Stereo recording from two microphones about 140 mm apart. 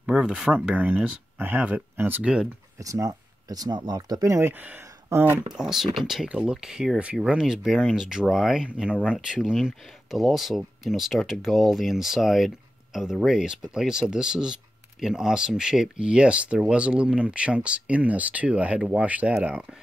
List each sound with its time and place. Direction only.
0.0 s speech: 5° right (ahead or behind)
2.8 s speech: 25° right (ahead or behind)
5.5 s speech: 5° right (ahead or behind)